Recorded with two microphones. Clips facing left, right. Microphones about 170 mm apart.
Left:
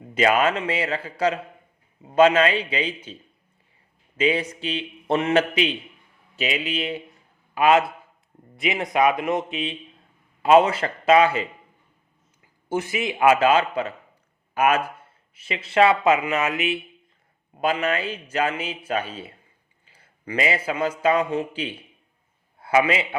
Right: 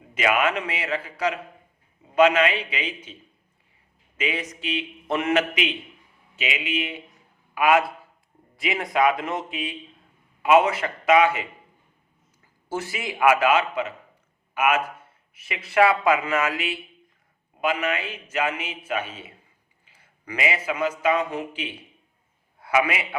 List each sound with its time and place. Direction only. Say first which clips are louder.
0.1 s a man's voice: left 3 dB; 35° left (ahead or behind)
4.2 s a man's voice: left 7 dB; 30° left (ahead or behind)
12.6 s speech: left 5 dB; 20° left (ahead or behind)
17.6 s a man's voice: left 2 dB; 35° left (ahead or behind)